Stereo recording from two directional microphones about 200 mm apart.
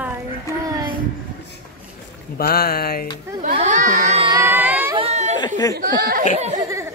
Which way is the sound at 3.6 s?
40° right (ahead or behind).